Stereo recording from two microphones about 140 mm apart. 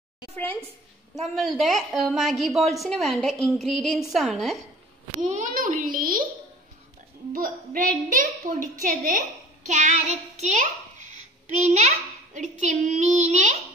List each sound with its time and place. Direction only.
1.3 s a woman's voice: centre (ahead or behind)
5.2 s a woman's voice: 60° right (ahead or behind); by 6.2 s 80° right
7.3 s a woman's voice: 85° right
9.7 s a child's voice: 55° right (ahead or behind)